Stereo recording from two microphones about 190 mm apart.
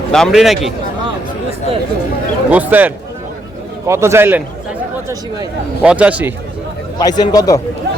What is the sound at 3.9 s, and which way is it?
Speech, 15° right (ahead or behind).